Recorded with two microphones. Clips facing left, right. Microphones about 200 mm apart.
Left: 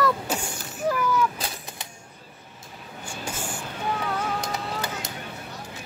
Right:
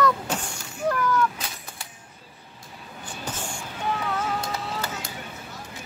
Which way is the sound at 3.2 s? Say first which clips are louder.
Even; 10° left (ahead or behind).